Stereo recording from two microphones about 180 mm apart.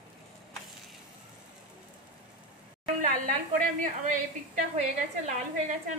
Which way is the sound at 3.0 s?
50° right (ahead or behind).